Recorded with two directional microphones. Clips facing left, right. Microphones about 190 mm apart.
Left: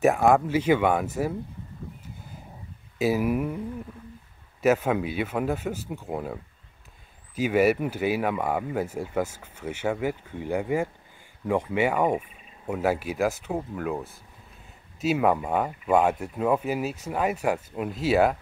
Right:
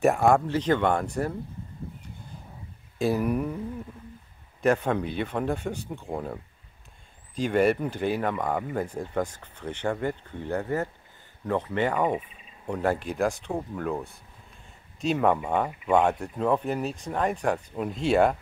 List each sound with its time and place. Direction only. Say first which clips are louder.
0.0 s speech: left 1 dB; centre (ahead or behind)
3.0 s speech: left 1 dB; 5° left (ahead or behind)
4.6 s speech: left 1 dB; 5° left (ahead or behind)